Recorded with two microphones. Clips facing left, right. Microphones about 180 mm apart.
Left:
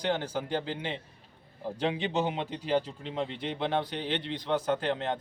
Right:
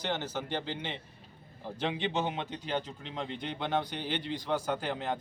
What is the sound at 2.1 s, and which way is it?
Speech, centre (ahead or behind).